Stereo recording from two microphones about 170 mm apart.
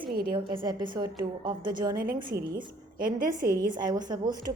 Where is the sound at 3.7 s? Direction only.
25° right (ahead or behind).